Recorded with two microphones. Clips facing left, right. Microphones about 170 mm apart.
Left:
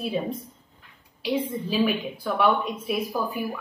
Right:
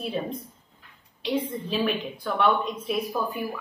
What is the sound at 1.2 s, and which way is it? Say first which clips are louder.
A woman's voice: left 1 dB; 5° left (ahead or behind).